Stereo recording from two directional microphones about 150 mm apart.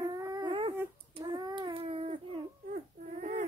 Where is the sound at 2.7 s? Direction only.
55° right (ahead or behind).